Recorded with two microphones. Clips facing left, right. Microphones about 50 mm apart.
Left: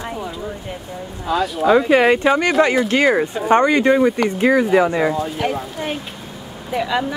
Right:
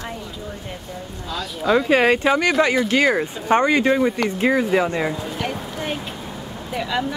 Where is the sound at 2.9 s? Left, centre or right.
Left.